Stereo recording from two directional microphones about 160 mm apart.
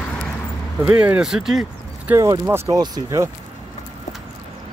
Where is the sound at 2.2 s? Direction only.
20° right (ahead or behind).